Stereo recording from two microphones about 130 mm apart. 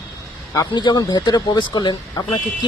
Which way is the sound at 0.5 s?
35° left (ahead or behind).